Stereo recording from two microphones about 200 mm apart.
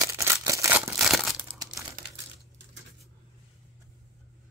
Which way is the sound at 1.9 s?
60° right (ahead or behind).